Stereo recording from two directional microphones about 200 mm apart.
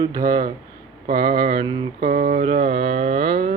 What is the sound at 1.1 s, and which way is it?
Mantra, 25° right (ahead or behind).